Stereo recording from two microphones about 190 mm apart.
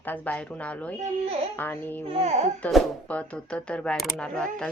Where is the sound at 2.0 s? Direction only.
35° right (ahead or behind).